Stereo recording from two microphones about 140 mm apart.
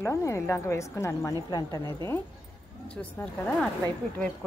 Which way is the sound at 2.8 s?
10° left (ahead or behind).